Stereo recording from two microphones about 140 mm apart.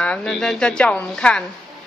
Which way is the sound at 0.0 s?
5° left (ahead or behind).